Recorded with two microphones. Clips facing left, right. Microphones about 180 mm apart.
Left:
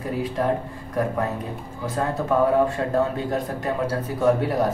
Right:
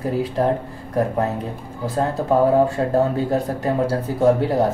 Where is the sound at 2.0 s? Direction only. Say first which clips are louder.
Right 3 dB; 30° right (ahead or behind).